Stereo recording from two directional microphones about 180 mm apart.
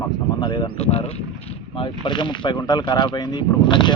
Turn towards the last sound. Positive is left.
turn(degrees=25)  # may be behind; listen again after turning